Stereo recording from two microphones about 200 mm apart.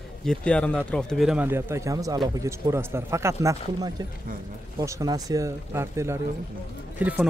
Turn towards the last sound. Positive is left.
turn(degrees=-5)  # may be behind; listen again after turning